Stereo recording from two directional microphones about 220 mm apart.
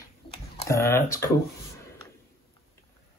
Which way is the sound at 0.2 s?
20° left (ahead or behind).